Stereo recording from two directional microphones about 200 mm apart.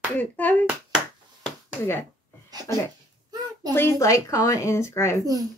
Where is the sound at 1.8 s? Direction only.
15° left (ahead or behind).